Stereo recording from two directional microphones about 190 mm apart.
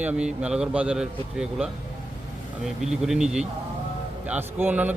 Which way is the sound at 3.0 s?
5° right (ahead or behind).